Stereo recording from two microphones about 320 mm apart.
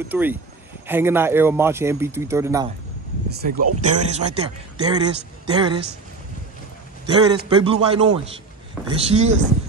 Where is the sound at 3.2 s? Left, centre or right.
Right.